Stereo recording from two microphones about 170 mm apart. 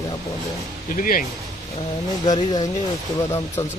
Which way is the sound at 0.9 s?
55° left (ahead or behind).